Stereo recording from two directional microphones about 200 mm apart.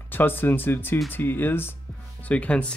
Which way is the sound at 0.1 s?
10° left (ahead or behind).